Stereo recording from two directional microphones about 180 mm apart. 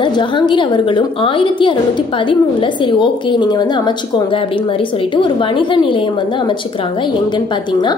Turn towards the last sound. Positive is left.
turn(degrees=25)  # may be behind; listen again after turning